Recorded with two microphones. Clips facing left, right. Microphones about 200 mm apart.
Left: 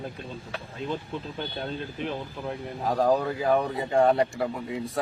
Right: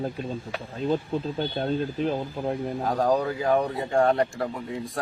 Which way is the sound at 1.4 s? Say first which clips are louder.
Right 7 dB; 40° right (ahead or behind).